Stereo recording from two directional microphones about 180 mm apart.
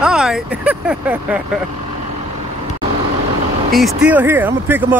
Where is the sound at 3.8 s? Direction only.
Centre (ahead or behind).